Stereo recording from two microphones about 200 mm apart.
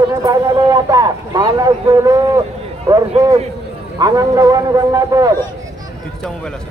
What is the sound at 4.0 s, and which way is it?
A man's voice, 20° right (ahead or behind).